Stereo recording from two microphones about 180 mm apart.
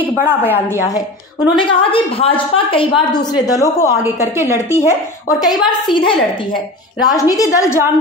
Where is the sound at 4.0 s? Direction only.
15° right (ahead or behind).